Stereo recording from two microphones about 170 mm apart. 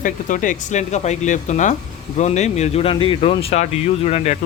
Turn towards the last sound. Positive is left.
turn(degrees=40)  # may be behind; listen again after turning